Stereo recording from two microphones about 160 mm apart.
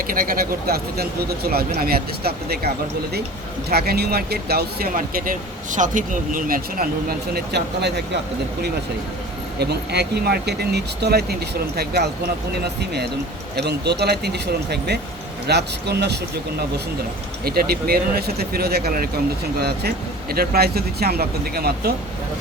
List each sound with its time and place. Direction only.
0.1 s speech: 65° right (ahead or behind); by 8.0 s 90° right
9.6 s speech: 90° right
17.4 s speech: 75° right (ahead or behind)
20.3 s speech: 70° right (ahead or behind)